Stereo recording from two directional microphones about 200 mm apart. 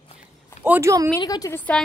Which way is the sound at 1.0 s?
15° left (ahead or behind).